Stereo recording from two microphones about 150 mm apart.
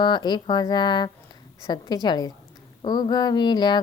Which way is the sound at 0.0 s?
30° left (ahead or behind).